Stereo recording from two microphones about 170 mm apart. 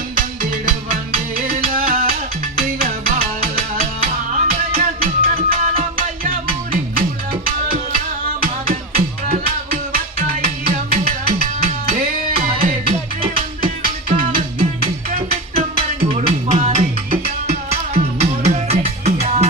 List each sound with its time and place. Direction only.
0.2 s music: 55° right (ahead or behind)
7.4 s music: 55° right (ahead or behind)
16.1 s music: 40° right (ahead or behind)